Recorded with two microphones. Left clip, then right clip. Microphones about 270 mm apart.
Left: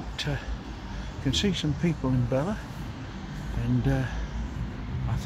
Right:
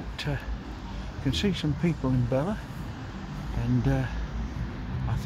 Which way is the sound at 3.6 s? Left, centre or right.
Centre.